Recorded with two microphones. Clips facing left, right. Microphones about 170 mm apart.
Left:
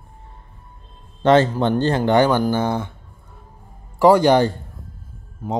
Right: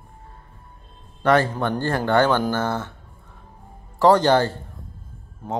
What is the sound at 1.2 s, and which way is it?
A man's voice, 25° left (ahead or behind).